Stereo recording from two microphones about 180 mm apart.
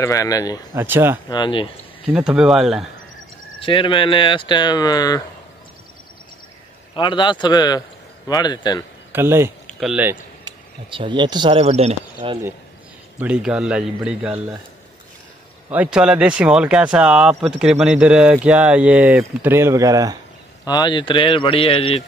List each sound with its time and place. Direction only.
0.0 s speech: 15° left (ahead or behind)
0.7 s speech: 10° right (ahead or behind)
1.3 s speech: 25° left (ahead or behind)
2.1 s speech: 5° right (ahead or behind)
3.5 s speech: 30° left (ahead or behind)
7.0 s speech: 25° left (ahead or behind)
9.1 s speech: 15° right (ahead or behind)
9.7 s speech: centre (ahead or behind)
10.4 s speech: 25° right (ahead or behind)
13.2 s speech: 5° right (ahead or behind)
15.7 s speech: 5° right (ahead or behind)
20.6 s speech: 25° left (ahead or behind)